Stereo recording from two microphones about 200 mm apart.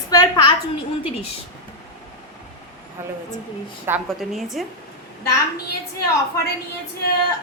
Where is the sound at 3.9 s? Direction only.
10° right (ahead or behind).